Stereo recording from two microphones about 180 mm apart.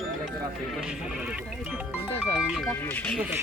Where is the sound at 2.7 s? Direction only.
10° left (ahead or behind).